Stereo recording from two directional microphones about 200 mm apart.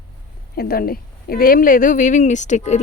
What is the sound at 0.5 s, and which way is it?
A woman's voice, 50° left (ahead or behind).